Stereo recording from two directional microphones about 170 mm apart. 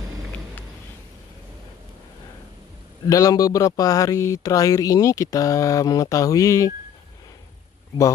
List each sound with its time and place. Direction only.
3.1 s speech: 20° left (ahead or behind)